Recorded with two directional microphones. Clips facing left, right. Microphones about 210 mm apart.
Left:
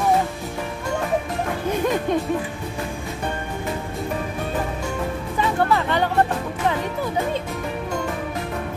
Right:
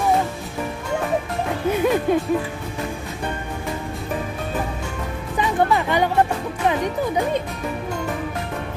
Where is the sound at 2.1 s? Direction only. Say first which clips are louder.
Right 2 dB; 5° right (ahead or behind).